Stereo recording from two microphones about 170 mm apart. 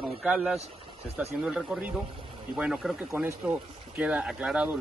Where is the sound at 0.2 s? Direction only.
5° right (ahead or behind).